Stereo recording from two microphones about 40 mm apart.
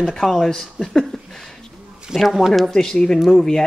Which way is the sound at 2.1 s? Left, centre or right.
Centre.